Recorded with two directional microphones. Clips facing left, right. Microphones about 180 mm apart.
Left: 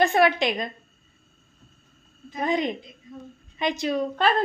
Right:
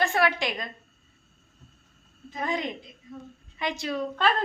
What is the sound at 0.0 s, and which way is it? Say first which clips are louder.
Speech: left 5 dB; 20° left (ahead or behind).